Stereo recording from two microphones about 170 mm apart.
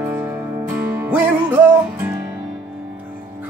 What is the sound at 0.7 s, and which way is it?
Music, 10° right (ahead or behind).